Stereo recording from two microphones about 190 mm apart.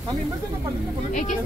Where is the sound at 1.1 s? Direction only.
40° left (ahead or behind).